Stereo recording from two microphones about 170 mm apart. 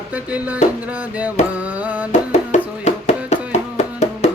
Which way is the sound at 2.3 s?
40° left (ahead or behind).